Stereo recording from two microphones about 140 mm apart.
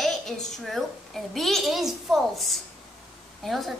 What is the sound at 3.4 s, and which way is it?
Speech, centre (ahead or behind).